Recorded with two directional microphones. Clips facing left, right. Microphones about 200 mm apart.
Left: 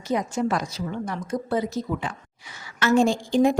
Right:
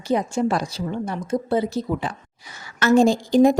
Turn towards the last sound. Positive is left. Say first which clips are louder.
# right 4 dB
turn(degrees=-40)  # may be behind; listen again after turning